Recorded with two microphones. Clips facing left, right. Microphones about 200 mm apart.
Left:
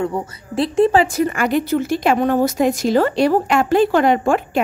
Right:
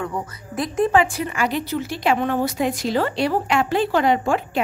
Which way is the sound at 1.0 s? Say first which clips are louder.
Left 5 dB; 45° left (ahead or behind).